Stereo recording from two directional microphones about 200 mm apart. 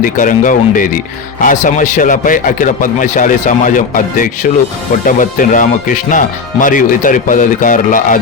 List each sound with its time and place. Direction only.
0.0 s a man's voice: 40° left (ahead or behind)